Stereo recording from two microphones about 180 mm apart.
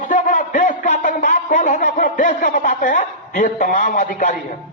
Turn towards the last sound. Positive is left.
turn(degrees=50)  # may be behind; listen again after turning